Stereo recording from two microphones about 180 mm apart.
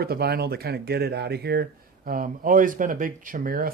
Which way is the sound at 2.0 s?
50° right (ahead or behind).